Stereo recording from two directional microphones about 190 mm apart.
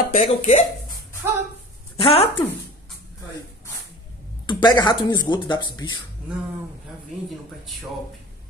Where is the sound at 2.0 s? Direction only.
30° left (ahead or behind).